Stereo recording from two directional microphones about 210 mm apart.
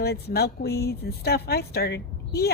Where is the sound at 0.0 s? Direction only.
50° left (ahead or behind).